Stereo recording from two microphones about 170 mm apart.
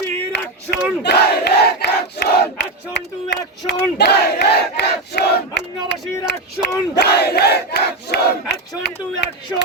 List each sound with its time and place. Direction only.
0.3 s battle cry: 80° left
6.9 s crowd: 75° left (ahead or behind)